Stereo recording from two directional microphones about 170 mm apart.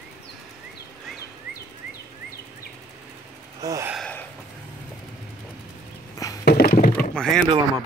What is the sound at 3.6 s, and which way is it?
Gasp, 20° right (ahead or behind).